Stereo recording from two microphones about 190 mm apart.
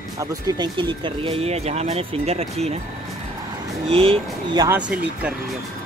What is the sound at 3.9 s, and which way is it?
Speech, 30° right (ahead or behind).